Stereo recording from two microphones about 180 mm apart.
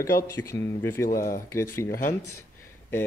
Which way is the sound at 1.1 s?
50° left (ahead or behind).